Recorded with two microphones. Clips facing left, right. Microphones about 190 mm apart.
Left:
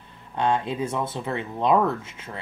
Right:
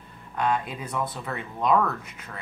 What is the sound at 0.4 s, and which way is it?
Speech, 25° left (ahead or behind).